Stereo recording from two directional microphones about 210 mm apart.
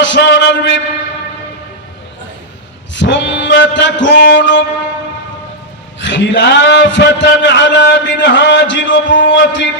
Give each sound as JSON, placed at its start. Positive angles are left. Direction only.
{"t": 0.0, "sound": "a man's voice", "side_deg": 55}
{"t": 2.9, "sound": "a man's voice", "side_deg": 60}
{"t": 6.0, "sound": "a man's voice", "side_deg": 60}